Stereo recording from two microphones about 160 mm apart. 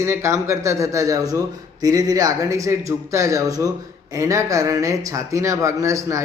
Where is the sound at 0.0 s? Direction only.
15° right (ahead or behind).